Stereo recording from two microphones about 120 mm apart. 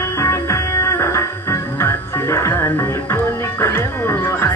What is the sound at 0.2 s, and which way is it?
Music, 25° left (ahead or behind).